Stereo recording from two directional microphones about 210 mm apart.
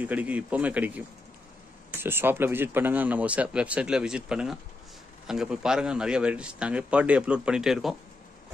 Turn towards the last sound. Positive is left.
turn(degrees=0)  # may be behind; listen again after turning